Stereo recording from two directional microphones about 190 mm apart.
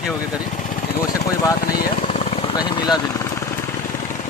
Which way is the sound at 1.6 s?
50° left (ahead or behind).